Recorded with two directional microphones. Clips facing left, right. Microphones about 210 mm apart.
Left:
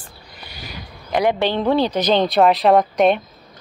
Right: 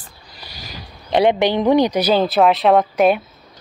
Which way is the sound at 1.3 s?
15° right (ahead or behind).